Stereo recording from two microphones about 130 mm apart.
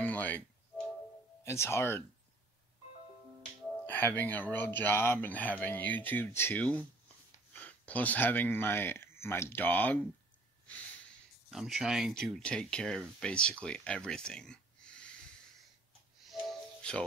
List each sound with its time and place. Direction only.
0.0 s music: 10° left (ahead or behind)
1.4 s speech: 20° left (ahead or behind)
3.8 s speech: 15° left (ahead or behind)
11.5 s speech: 5° right (ahead or behind)
16.3 s music: 5° left (ahead or behind)